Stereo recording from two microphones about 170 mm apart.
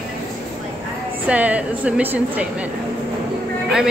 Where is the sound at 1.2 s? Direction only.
10° right (ahead or behind).